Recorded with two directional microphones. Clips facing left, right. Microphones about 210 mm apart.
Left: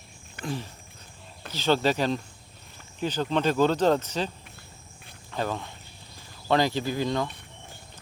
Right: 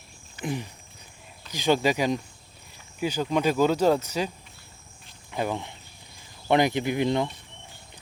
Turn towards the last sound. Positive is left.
turn(degrees=-20)  # may be behind; listen again after turning